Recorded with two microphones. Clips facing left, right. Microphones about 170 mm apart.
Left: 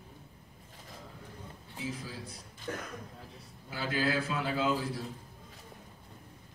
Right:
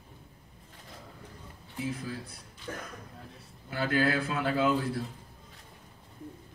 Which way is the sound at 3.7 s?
55° right (ahead or behind).